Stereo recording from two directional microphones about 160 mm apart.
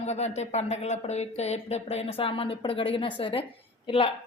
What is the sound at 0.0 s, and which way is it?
A woman's voice, 45° left (ahead or behind).